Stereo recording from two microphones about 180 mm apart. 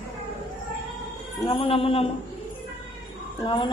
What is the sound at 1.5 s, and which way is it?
Speech, 30° left (ahead or behind).